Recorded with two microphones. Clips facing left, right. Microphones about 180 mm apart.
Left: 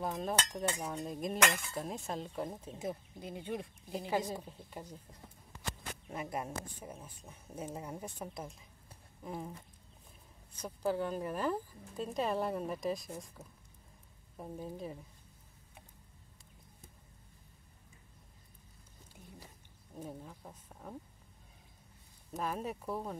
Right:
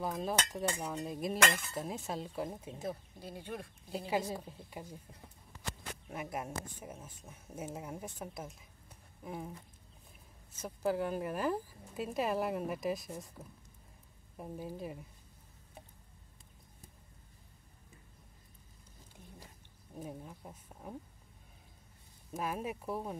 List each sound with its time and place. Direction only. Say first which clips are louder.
0.2 s speech: even; 5° right (ahead or behind)
2.8 s speech: left 2 dB; 15° left (ahead or behind)
4.5 s speech: even; 10° right (ahead or behind)
6.0 s speech: left 1 dB; 5° right (ahead or behind)
10.6 s speech: right 1 dB; 5° right (ahead or behind)
19.9 s speech: right 1 dB; 10° right (ahead or behind)
22.3 s speech: even; 5° right (ahead or behind)